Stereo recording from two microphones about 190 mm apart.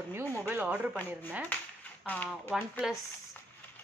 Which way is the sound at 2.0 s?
10° left (ahead or behind).